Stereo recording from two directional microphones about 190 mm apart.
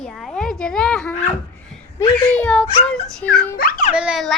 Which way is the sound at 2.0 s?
10° left (ahead or behind).